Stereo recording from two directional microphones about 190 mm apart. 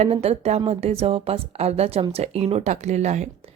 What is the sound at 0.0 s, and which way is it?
Speech, 30° right (ahead or behind).